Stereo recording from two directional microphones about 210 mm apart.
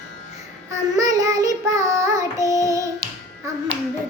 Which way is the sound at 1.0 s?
15° right (ahead or behind).